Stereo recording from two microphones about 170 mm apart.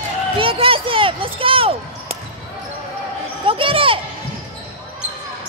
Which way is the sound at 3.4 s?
30° right (ahead or behind).